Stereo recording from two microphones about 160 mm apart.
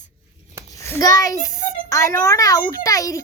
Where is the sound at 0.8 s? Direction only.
20° left (ahead or behind).